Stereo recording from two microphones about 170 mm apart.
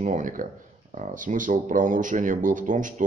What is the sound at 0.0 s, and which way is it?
Speech, 50° right (ahead or behind).